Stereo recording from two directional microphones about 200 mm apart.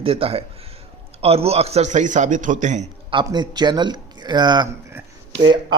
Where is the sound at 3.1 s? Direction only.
20° right (ahead or behind).